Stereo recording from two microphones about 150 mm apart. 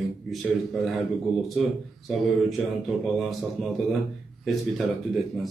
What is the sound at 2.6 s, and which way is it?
Speech, centre (ahead or behind).